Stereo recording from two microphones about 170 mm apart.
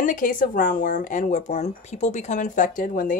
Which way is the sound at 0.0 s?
50° left (ahead or behind).